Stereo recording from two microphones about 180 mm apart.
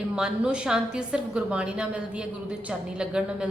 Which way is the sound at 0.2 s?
5° right (ahead or behind).